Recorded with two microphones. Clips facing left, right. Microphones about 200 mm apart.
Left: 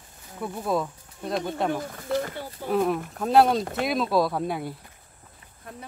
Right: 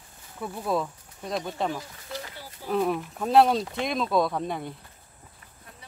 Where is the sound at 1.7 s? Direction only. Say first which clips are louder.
Left 8 dB; 55° left (ahead or behind).